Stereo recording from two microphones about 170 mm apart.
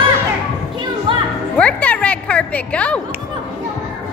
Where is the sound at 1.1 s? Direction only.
30° right (ahead or behind).